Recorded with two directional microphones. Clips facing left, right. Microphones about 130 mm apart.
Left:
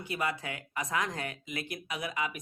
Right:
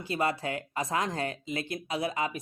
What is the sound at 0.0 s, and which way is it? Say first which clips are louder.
Speech: right 4 dB; 30° right (ahead or behind).